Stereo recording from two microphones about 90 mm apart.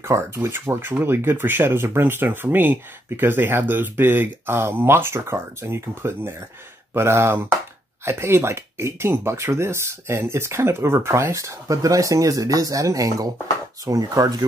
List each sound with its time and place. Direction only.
0.0 s speech: 30° right (ahead or behind)